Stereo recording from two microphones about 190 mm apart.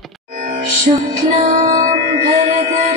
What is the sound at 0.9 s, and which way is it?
Music, 40° right (ahead or behind).